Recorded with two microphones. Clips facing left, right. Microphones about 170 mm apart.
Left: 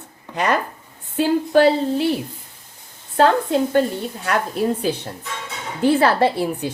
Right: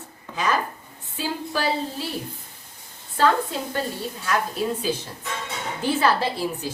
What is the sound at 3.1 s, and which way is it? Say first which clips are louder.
A woman's voice: left 5 dB; 65° left (ahead or behind).